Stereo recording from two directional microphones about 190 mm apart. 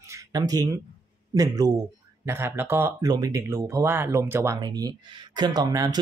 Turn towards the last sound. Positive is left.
turn(degrees=-20)  # may be behind; listen again after turning